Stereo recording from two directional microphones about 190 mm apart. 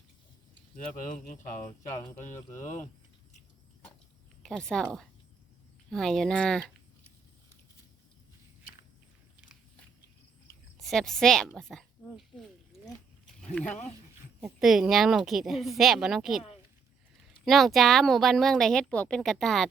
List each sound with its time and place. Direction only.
1.0 s speech: 45° left (ahead or behind)
4.4 s speech: 5° left (ahead or behind)
10.8 s a woman's voice: centre (ahead or behind)
17.4 s speech: centre (ahead or behind)